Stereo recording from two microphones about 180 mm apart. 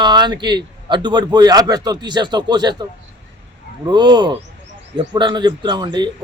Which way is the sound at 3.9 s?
25° right (ahead or behind).